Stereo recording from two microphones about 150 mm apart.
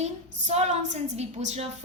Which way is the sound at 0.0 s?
50° right (ahead or behind).